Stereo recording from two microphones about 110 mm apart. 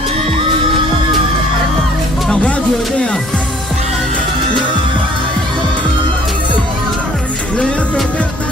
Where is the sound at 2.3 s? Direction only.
10° left (ahead or behind).